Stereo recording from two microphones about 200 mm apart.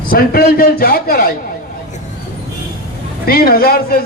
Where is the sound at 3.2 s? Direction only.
50° left (ahead or behind).